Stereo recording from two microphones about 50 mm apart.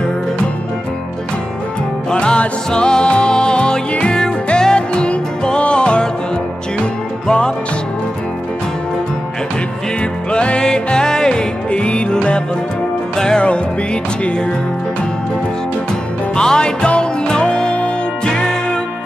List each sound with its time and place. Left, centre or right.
2.0 s music: centre
7.2 s music: centre
10.3 s music: left
16.3 s music: centre